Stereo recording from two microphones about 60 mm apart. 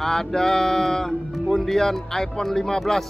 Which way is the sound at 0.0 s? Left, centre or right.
Centre.